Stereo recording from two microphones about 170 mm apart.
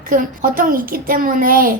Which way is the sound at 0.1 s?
55° right (ahead or behind).